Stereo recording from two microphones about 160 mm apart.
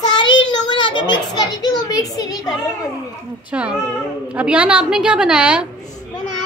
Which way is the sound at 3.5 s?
10° right (ahead or behind).